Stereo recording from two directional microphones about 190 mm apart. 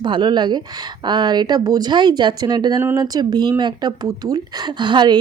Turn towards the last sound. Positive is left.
turn(degrees=-25)  # may be behind; listen again after turning